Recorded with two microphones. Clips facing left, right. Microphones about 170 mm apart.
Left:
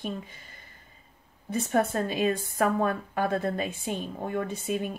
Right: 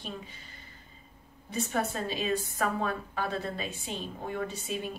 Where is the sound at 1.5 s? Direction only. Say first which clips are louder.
Left 6 dB; 55° left (ahead or behind).